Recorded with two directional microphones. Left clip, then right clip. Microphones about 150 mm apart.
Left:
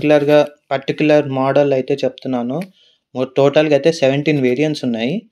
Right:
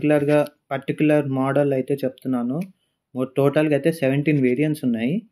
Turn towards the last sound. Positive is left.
turn(degrees=30)  # may be behind; listen again after turning